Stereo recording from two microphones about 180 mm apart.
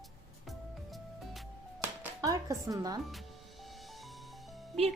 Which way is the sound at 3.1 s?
Centre (ahead or behind).